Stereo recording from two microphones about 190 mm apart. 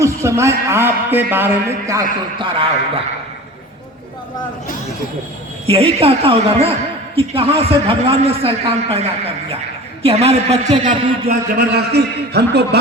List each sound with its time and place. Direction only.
0.0 s a man's voice: 15° right (ahead or behind)
1.9 s a man's voice: 20° right (ahead or behind)
5.6 s a woman's voice: 30° right (ahead or behind)
11.3 s a man's voice: 55° right (ahead or behind)